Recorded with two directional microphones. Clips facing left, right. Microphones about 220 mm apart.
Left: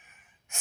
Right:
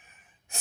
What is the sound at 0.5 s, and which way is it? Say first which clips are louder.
Speech: right 3 dB; 35° right (ahead or behind).